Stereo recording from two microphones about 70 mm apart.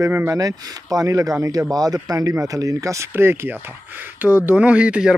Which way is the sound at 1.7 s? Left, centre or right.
Right.